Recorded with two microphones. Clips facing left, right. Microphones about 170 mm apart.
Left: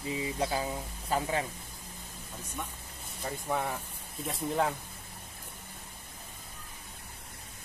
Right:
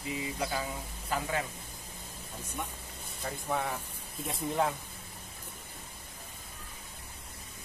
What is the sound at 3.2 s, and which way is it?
Speech, 5° left (ahead or behind).